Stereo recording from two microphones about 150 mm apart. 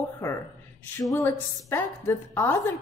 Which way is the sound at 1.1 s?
15° left (ahead or behind).